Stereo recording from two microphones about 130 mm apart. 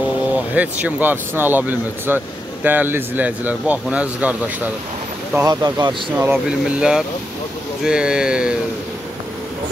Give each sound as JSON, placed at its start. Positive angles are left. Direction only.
{"t": 0.6, "sound": "speech", "side_deg": -10}
{"t": 5.4, "sound": "speech", "side_deg": -30}
{"t": 6.1, "sound": "speech", "side_deg": -15}